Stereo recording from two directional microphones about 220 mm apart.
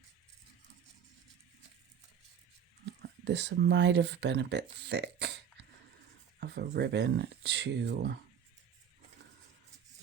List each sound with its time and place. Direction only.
2.8 s speech: 50° right (ahead or behind)
6.4 s speech: 50° right (ahead or behind)